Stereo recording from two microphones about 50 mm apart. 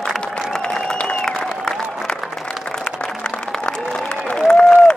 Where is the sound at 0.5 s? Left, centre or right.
Centre.